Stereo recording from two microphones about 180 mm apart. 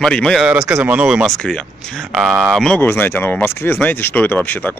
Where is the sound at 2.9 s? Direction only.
15° left (ahead or behind).